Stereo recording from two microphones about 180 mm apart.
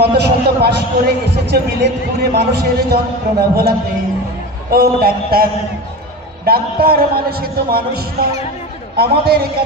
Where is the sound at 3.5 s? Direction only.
60° right (ahead or behind).